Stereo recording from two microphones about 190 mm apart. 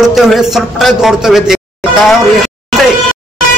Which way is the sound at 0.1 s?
Centre (ahead or behind).